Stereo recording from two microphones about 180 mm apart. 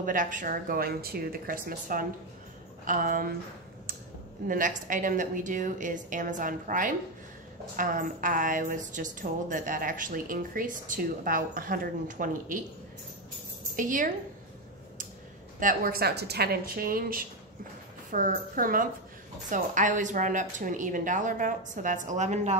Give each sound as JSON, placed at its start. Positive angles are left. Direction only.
{"t": 0.0, "sound": "a woman's voice", "side_deg": -45}
{"t": 4.5, "sound": "a woman's voice", "side_deg": -45}
{"t": 13.7, "sound": "a woman's voice", "side_deg": -45}
{"t": 15.6, "sound": "a woman's voice", "side_deg": -55}